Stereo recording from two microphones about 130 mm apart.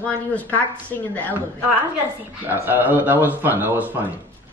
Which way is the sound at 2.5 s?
15° right (ahead or behind).